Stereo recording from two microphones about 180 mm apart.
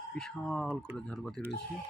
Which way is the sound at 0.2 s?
5° left (ahead or behind).